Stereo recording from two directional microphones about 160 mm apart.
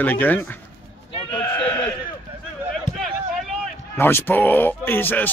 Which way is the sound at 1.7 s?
15° left (ahead or behind).